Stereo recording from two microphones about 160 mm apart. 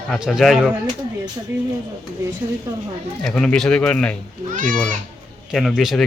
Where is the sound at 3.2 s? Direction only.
5° left (ahead or behind).